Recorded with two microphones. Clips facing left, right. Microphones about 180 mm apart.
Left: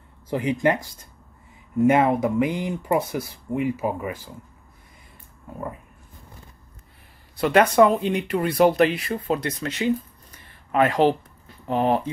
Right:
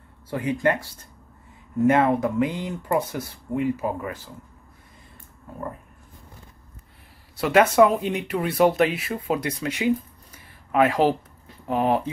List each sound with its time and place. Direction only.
0.3 s speech: 15° left (ahead or behind)
7.3 s speech: 5° right (ahead or behind)